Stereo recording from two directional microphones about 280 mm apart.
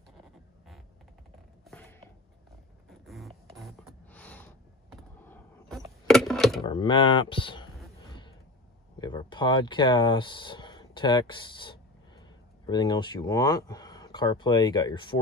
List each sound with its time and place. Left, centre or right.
1.7 s a sound: centre
6.6 s speech: centre
8.9 s speech: centre